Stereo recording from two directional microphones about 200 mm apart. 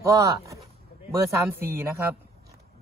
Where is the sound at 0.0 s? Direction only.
15° right (ahead or behind).